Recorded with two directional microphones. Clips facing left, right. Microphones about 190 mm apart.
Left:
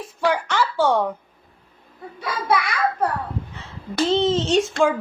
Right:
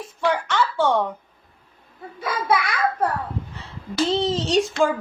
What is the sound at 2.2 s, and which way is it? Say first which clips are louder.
A child's voice: even; centre (ahead or behind).